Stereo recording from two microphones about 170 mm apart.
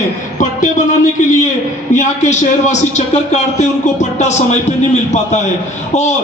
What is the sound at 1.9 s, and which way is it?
Speech, 45° left (ahead or behind).